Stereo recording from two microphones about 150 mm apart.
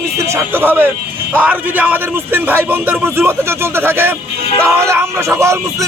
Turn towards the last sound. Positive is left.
turn(degrees=-20)  # may be behind; listen again after turning